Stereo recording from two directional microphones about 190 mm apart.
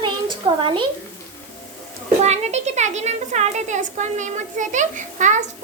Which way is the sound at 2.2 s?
35° right (ahead or behind).